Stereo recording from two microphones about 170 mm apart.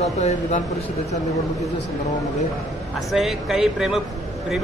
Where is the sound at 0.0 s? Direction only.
40° left (ahead or behind).